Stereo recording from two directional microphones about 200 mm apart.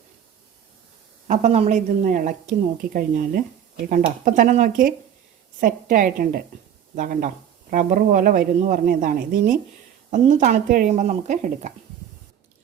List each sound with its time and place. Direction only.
1.3 s a woman's voice: 35° right (ahead or behind)